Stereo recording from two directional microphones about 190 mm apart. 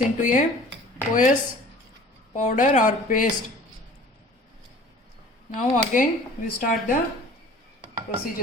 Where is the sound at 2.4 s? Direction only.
45° left (ahead or behind).